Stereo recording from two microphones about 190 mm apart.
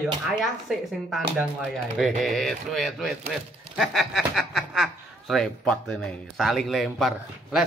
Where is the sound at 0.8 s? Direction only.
Centre (ahead or behind).